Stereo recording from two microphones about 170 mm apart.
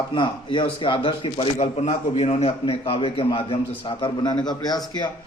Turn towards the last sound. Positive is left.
turn(degrees=25)  # may be behind; listen again after turning